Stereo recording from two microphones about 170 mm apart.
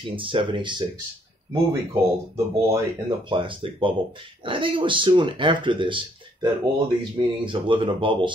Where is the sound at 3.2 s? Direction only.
30° right (ahead or behind).